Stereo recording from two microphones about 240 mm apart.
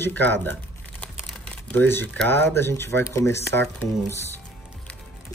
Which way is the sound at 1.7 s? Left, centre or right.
Centre.